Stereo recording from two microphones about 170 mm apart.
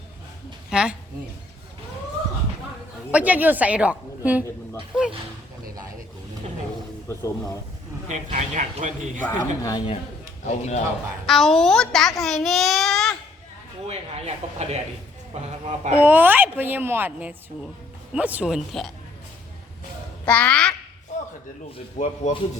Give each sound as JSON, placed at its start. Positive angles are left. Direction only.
{"t": 0.7, "sound": "speech", "side_deg": -5}
{"t": 3.1, "sound": "a woman's voice", "side_deg": -10}
{"t": 8.1, "sound": "speech", "side_deg": -45}
{"t": 9.2, "sound": "speech", "side_deg": 20}
{"t": 10.4, "sound": "a man's voice", "side_deg": 40}
{"t": 11.3, "sound": "a child's voice", "side_deg": 0}
{"t": 13.8, "sound": "speech", "side_deg": -40}
{"t": 16.0, "sound": "a woman's voice", "side_deg": -10}
{"t": 20.2, "sound": "a child's voice", "side_deg": 5}
{"t": 21.9, "sound": "speech", "side_deg": 45}